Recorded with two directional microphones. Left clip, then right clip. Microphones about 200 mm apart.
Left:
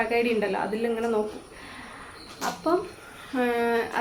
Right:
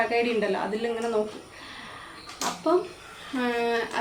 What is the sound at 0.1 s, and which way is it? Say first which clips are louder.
Speech: even; centre (ahead or behind).